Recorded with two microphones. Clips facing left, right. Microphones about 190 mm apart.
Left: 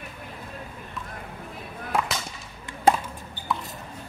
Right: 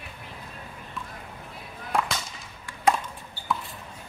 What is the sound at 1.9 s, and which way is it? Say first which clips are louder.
Whip: even; centre (ahead or behind).